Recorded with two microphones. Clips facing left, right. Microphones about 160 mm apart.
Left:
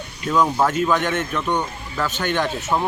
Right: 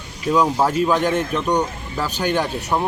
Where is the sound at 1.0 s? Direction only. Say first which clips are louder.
Right 3 dB; 35° right (ahead or behind).